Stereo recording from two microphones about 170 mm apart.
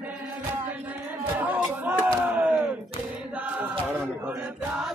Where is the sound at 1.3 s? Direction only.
10° right (ahead or behind).